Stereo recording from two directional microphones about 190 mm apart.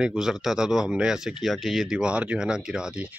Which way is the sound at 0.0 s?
5° right (ahead or behind).